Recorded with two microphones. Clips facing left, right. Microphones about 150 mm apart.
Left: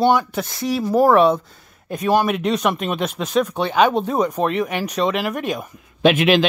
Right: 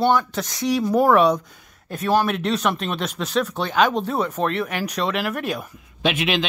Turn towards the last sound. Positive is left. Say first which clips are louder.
# left 7 dB
turn(degrees=50)  # may be behind; listen again after turning